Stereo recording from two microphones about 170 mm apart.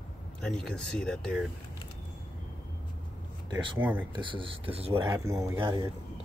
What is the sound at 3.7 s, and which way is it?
Speech, 10° right (ahead or behind).